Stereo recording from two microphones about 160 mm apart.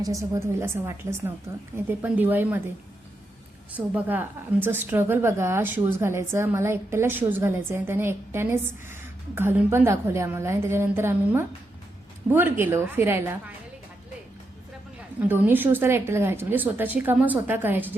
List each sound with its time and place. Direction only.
0.0 s a woman's voice: 20° right (ahead or behind)
3.7 s a woman's voice: 10° right (ahead or behind)
15.2 s a woman's voice: 10° right (ahead or behind)